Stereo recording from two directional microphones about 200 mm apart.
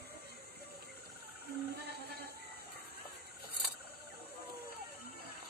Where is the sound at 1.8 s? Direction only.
55° right (ahead or behind).